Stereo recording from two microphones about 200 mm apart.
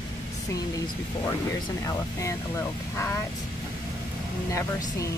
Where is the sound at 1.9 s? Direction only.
15° left (ahead or behind).